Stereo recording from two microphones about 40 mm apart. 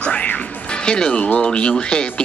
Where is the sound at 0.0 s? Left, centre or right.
Left.